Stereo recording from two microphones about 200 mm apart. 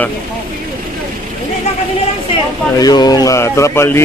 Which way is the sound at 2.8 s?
20° left (ahead or behind).